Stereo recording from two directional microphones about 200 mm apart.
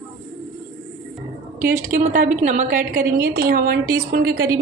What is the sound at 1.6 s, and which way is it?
A woman's voice, 45° right (ahead or behind).